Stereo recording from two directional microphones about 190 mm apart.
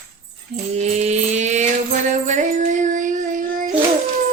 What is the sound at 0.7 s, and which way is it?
Mantra, 35° right (ahead or behind).